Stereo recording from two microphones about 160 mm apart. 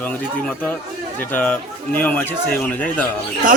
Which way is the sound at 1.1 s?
10° left (ahead or behind).